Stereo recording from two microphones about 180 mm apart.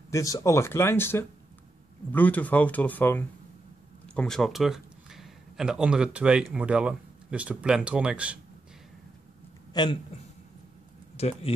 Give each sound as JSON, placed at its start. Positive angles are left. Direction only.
{"t": 0.1, "sound": "a man's voice", "side_deg": 20}
{"t": 9.8, "sound": "a man's voice", "side_deg": 20}
{"t": 11.1, "sound": "speech", "side_deg": 35}